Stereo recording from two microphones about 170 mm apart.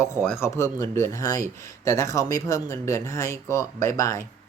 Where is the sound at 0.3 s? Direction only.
15° left (ahead or behind).